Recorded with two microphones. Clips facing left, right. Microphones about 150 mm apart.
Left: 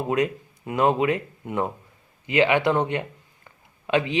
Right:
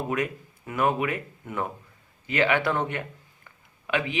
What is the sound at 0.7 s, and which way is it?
Speech, 25° left (ahead or behind).